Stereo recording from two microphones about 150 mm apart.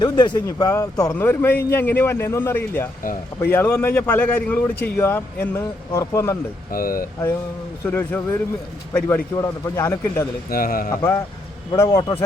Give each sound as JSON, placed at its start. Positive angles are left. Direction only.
{"t": 0.0, "sound": "speech", "side_deg": 30}
{"t": 1.1, "sound": "a man's voice", "side_deg": 15}
{"t": 6.7, "sound": "speech", "side_deg": 75}
{"t": 7.9, "sound": "a man's voice", "side_deg": 15}
{"t": 10.5, "sound": "speech", "side_deg": 75}
{"t": 10.9, "sound": "speech", "side_deg": 20}